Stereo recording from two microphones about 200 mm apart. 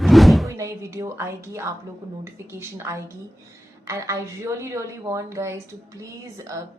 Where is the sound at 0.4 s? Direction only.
15° right (ahead or behind).